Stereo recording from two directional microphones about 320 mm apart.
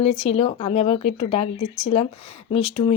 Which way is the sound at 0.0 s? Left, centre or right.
Centre.